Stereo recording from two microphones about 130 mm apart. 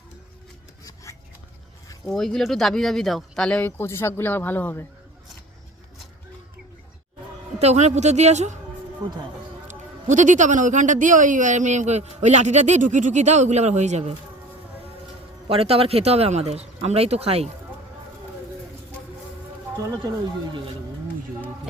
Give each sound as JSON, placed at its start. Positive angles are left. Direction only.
{"t": 2.0, "sound": "speech", "side_deg": 5}
{"t": 7.6, "sound": "a woman's voice", "side_deg": -55}
{"t": 9.6, "sound": "speech", "side_deg": -70}
{"t": 15.4, "sound": "speech", "side_deg": -45}